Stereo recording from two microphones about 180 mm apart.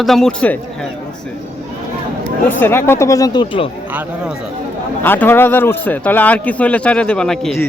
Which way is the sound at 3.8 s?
10° right (ahead or behind).